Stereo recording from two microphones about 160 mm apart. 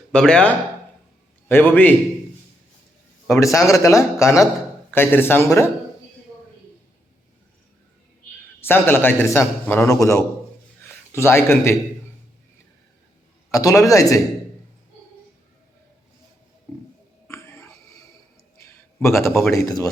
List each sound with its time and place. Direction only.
0.1 s a man's voice: 5° left (ahead or behind)
3.3 s a man's voice: 20° left (ahead or behind)
8.6 s a man's voice: 15° left (ahead or behind)
10.8 s a sound: 15° left (ahead or behind)
13.5 s speech: 20° left (ahead or behind)
17.2 s music: 15° left (ahead or behind)
18.6 s a sound: 15° left (ahead or behind)
19.5 s speech: 20° left (ahead or behind)